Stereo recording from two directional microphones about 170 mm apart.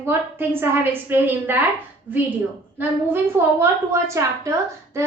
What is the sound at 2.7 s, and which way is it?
A woman's voice, 15° right (ahead or behind).